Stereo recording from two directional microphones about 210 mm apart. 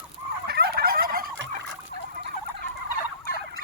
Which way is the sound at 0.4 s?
50° right (ahead or behind).